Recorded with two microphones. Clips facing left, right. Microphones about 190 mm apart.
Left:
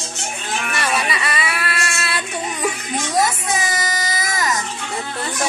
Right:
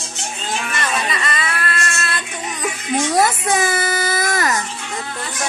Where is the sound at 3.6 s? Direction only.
65° right (ahead or behind).